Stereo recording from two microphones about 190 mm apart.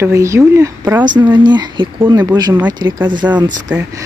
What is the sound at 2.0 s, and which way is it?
Speech, 15° right (ahead or behind).